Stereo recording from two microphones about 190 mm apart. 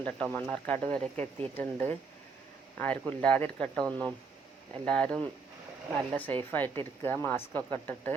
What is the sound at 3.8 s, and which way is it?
Speech, 20° right (ahead or behind).